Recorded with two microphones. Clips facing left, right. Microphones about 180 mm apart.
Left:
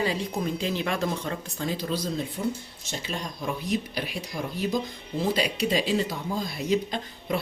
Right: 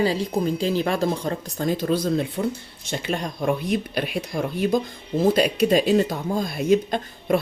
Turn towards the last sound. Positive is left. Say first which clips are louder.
# right 6 dB
turn(degrees=-50)  # may be behind; listen again after turning